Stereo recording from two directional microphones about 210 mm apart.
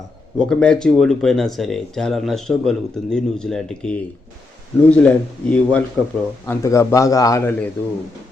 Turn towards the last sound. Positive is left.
turn(degrees=10)  # may be behind; listen again after turning